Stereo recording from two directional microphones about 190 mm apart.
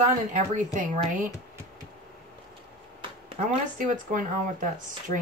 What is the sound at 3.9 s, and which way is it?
Speech, 45° right (ahead or behind).